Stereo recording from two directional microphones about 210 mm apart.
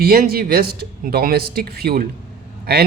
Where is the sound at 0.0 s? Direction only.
45° right (ahead or behind).